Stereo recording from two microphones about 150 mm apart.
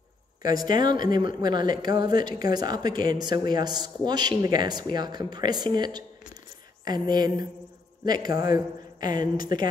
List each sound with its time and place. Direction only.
0.4 s a man's voice: 25° right (ahead or behind)